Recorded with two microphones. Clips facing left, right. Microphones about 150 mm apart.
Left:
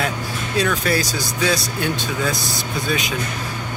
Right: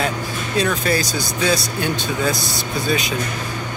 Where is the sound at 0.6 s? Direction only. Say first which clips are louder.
Even; centre (ahead or behind).